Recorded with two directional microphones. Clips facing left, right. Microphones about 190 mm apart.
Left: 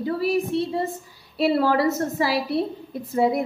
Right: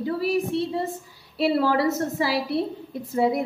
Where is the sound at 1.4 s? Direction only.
45° left (ahead or behind).